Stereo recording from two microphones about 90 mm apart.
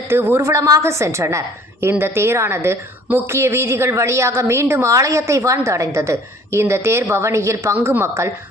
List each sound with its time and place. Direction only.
0.1 s a woman's voice: 25° right (ahead or behind)
0.5 s a woman's voice: 40° right (ahead or behind)